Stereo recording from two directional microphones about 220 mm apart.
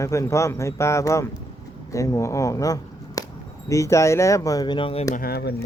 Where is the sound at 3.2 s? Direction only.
15° left (ahead or behind).